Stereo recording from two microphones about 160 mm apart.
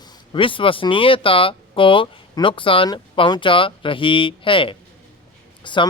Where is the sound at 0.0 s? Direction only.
30° left (ahead or behind).